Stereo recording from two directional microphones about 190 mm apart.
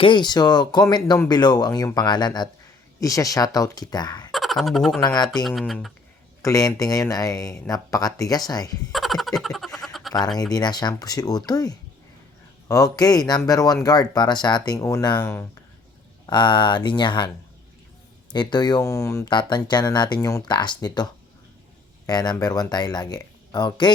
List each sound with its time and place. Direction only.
0.0 s speech: 25° left (ahead or behind)
4.3 s speech: centre (ahead or behind)
4.9 s speech: 20° left (ahead or behind)
5.4 s speech: centre (ahead or behind)
6.4 s speech: 20° left (ahead or behind)
8.9 s fowl: centre (ahead or behind)
10.5 s speech: 20° left (ahead or behind)
16.2 s speech: 25° left (ahead or behind)